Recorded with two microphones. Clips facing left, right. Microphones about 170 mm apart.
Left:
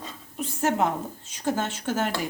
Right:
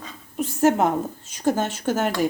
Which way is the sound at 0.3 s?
50° right (ahead or behind).